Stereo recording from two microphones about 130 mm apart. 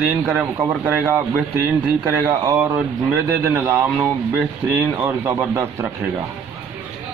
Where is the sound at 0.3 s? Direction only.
15° right (ahead or behind).